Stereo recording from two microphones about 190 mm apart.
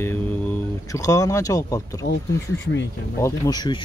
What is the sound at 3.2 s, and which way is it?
Speech, 20° left (ahead or behind).